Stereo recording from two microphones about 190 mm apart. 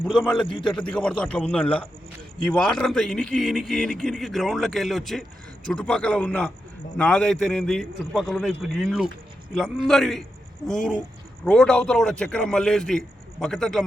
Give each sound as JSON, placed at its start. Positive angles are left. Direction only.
{"t": 0.4, "sound": "a man's voice", "side_deg": 25}
{"t": 0.9, "sound": "a man's voice", "side_deg": 5}